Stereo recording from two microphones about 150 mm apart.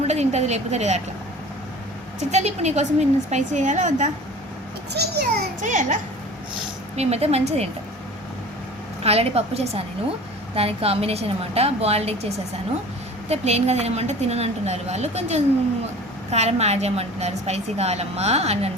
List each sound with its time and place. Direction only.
0.1 s a woman's voice: 50° right (ahead or behind)
2.3 s a woman's voice: 50° right (ahead or behind)
4.9 s a child's voice: 90° right; by 6.0 s 60° right (ahead or behind)
6.9 s a woman's voice: 45° right (ahead or behind)
9.0 s a woman's voice: 45° right (ahead or behind)